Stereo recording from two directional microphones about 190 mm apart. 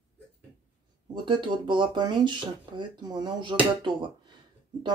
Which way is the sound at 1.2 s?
25° right (ahead or behind).